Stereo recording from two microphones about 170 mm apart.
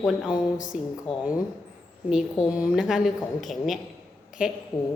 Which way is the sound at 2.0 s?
5° right (ahead or behind).